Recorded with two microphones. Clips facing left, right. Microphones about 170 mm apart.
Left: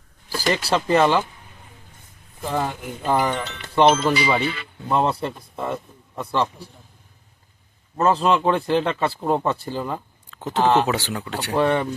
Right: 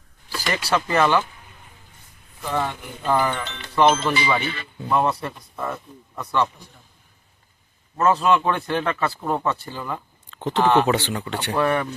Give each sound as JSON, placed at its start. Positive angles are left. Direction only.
{"t": 0.3, "sound": "speech", "side_deg": 30}
{"t": 2.4, "sound": "speech", "side_deg": 35}
{"t": 8.0, "sound": "speech", "side_deg": 30}
{"t": 10.3, "sound": "a sound", "side_deg": 5}
{"t": 10.8, "sound": "speech", "side_deg": 5}
{"t": 11.5, "sound": "speech", "side_deg": 25}